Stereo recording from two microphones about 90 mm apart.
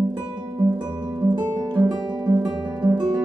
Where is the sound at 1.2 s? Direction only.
50° right (ahead or behind).